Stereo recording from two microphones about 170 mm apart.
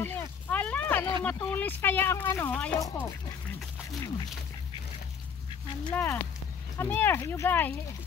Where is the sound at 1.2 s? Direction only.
10° left (ahead or behind).